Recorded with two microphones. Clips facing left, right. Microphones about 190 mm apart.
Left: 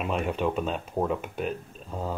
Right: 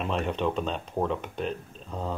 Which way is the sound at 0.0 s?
5° left (ahead or behind).